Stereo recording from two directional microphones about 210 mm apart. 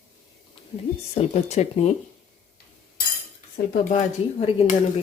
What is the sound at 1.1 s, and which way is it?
Speech, 30° left (ahead or behind).